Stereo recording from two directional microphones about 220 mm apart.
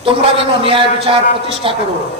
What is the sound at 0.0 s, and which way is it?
A man's voice, 25° right (ahead or behind).